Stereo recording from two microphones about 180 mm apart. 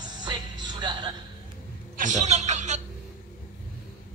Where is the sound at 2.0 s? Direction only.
40° right (ahead or behind).